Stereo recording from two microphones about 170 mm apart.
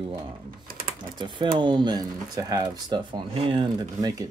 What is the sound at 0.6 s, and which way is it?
Typing, 60° right (ahead or behind).